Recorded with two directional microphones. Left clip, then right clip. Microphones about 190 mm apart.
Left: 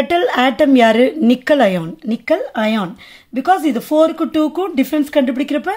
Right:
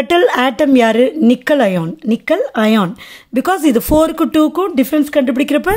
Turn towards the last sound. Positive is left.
turn(degrees=-40)  # may be behind; listen again after turning